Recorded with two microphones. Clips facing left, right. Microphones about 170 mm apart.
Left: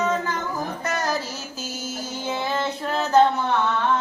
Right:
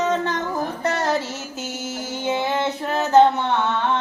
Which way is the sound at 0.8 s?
30° right (ahead or behind).